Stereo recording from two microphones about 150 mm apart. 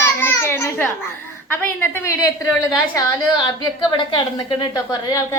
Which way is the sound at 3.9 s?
35° left (ahead or behind).